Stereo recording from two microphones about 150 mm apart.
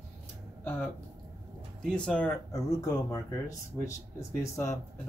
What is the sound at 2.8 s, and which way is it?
Speech, 20° left (ahead or behind).